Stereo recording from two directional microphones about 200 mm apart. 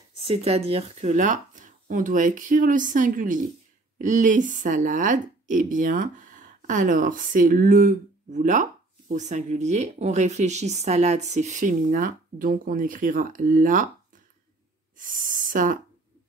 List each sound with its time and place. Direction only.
0.2 s speech: 30° right (ahead or behind)
15.0 s speech: 40° right (ahead or behind)